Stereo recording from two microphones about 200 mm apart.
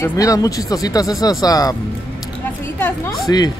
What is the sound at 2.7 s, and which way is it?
Speech, 10° left (ahead or behind).